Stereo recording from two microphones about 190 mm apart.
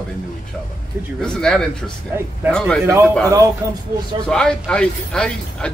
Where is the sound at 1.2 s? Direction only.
5° left (ahead or behind).